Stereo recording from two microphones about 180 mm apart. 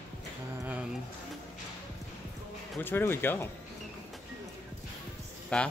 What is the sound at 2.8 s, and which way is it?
Speech, 10° left (ahead or behind).